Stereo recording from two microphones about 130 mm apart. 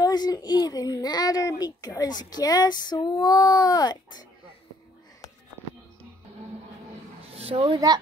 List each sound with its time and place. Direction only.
0.0 s a child's voice: 30° left (ahead or behind)
7.3 s speech: 50° right (ahead or behind)